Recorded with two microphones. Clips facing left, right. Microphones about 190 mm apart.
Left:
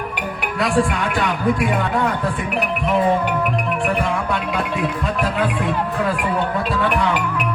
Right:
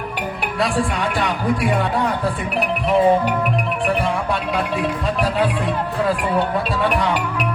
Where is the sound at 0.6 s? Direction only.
30° right (ahead or behind).